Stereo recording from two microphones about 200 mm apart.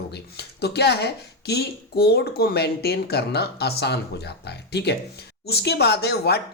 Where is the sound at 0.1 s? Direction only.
55° left (ahead or behind).